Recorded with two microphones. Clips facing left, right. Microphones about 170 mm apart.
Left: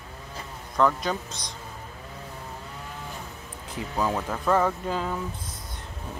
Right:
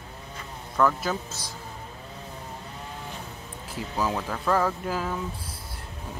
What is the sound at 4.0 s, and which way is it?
Speech, centre (ahead or behind).